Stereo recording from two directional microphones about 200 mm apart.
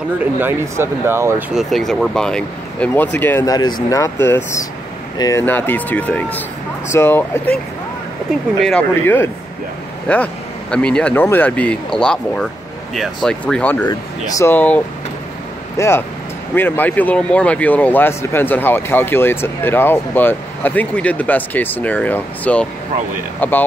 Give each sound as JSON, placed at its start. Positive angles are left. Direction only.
{"t": 0.2, "sound": "speech", "side_deg": -10}
{"t": 1.6, "sound": "speech", "side_deg": 0}
{"t": 8.6, "sound": "speech", "side_deg": 10}
{"t": 13.8, "sound": "speech", "side_deg": 15}
{"t": 15.8, "sound": "speech", "side_deg": 15}